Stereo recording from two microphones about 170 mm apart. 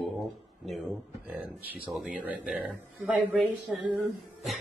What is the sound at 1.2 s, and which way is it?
Speech, 5° right (ahead or behind).